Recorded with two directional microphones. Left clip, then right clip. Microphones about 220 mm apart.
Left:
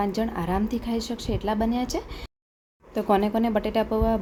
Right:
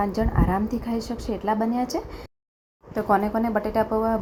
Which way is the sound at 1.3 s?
5° right (ahead or behind).